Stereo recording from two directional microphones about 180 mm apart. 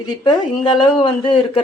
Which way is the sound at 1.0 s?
30° left (ahead or behind).